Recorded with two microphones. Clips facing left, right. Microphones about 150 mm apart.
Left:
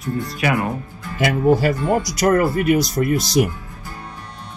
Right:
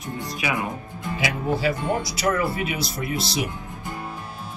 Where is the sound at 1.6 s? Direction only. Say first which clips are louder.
Left 5 dB; 50° left (ahead or behind).